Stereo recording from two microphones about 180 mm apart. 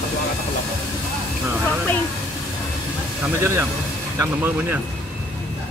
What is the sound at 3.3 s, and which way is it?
Speech, 15° right (ahead or behind).